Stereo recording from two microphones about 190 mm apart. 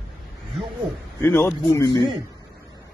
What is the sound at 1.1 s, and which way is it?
Speech, 10° left (ahead or behind).